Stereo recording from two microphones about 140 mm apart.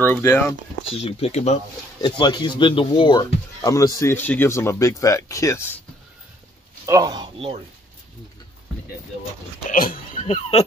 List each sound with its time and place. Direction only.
0.0 s speech: 15° left (ahead or behind)
0.9 s speech: 45° left (ahead or behind)
2.0 s speech: 30° left (ahead or behind)
3.6 s speech: 20° left (ahead or behind)
6.9 s a man's voice: 30° right (ahead or behind)
9.7 s speech: 80° left
10.2 s speech: 50° left (ahead or behind)